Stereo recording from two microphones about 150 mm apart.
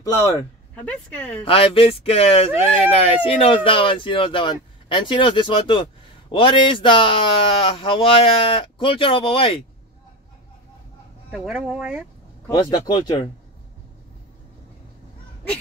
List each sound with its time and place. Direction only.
0.7 s speech: 10° left (ahead or behind)
1.4 s speech: 40° left (ahead or behind)
11.2 s speech: 5° right (ahead or behind)
12.4 s speech: 30° left (ahead or behind)